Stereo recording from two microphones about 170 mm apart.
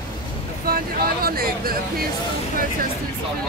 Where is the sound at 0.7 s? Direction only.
60° right (ahead or behind).